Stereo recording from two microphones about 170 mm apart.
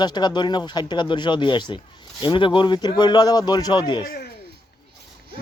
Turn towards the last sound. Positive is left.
turn(degrees=65)  # may be behind; listen again after turning